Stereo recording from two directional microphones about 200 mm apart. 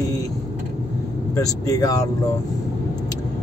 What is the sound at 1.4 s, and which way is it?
Speech, 15° left (ahead or behind).